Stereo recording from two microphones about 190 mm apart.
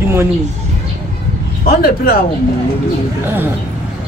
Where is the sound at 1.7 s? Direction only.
50° left (ahead or behind).